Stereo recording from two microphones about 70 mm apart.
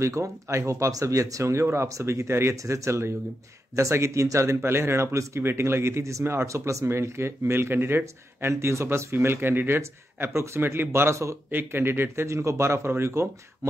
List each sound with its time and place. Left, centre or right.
0.0 s speech: right